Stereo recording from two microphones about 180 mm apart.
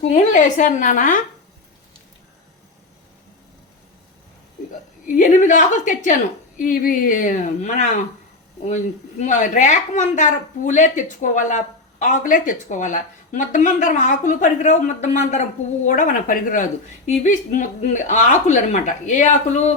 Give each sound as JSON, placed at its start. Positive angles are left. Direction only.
{"t": 0.0, "sound": "speech", "side_deg": 40}
{"t": 4.7, "sound": "a woman's voice", "side_deg": 45}